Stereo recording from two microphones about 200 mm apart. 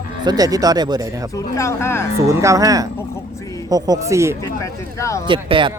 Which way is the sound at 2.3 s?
15° right (ahead or behind).